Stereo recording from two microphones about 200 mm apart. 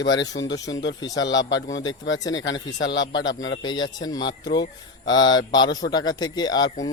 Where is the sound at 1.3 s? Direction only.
70° left (ahead or behind).